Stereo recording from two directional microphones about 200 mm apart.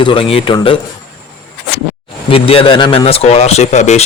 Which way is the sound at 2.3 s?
25° left (ahead or behind).